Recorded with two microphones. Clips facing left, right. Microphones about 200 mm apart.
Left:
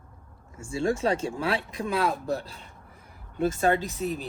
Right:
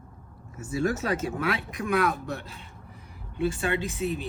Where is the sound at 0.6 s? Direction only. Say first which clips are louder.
Left 1 dB; 25° left (ahead or behind).